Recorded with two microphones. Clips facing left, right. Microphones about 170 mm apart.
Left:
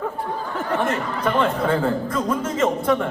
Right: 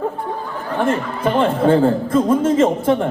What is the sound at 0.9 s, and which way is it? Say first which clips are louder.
A man's voice: right 4 dB; 30° right (ahead or behind).